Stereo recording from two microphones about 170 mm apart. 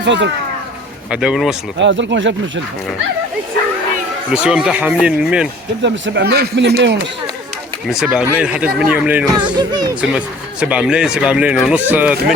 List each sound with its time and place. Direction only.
0.0 s speech: 90° right
1.1 s speech: 5° right (ahead or behind)
1.8 s speech: 90° right
4.3 s speech: 5° right (ahead or behind)
5.8 s speech: 80° right
7.9 s speech: 5° right (ahead or behind)
9.6 s speech: 25° right (ahead or behind)
9.9 s speech: 5° right (ahead or behind)